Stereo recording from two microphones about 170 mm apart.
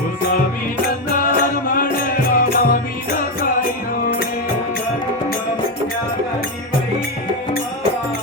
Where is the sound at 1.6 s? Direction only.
55° left (ahead or behind).